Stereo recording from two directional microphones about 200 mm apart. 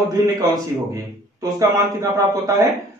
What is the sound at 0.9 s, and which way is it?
A man's voice, 15° right (ahead or behind).